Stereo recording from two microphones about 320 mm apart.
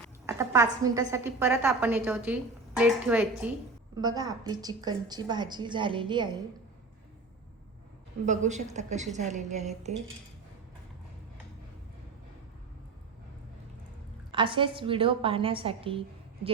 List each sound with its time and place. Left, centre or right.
0.3 s a woman's voice: centre
8.2 s a woman's voice: right
14.3 s a woman's voice: centre